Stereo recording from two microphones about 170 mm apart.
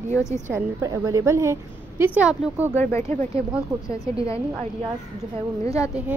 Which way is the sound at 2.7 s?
15° left (ahead or behind).